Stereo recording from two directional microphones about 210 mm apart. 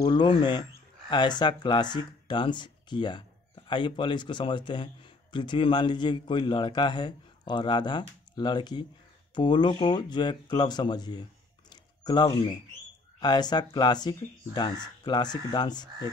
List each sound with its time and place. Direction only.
0.0 s speech: 20° left (ahead or behind)
11.7 s a sound: 20° left (ahead or behind)
13.2 s speech: 20° left (ahead or behind)